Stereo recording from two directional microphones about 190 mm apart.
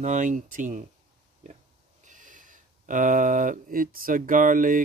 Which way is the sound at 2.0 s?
40° right (ahead or behind).